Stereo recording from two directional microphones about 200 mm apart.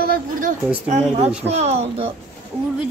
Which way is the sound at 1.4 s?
35° right (ahead or behind).